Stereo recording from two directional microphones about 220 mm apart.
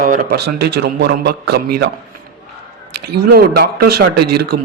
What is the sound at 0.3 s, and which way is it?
Speech, 50° right (ahead or behind).